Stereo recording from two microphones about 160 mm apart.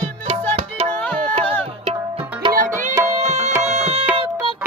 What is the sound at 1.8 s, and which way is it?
Tabla, 35° right (ahead or behind).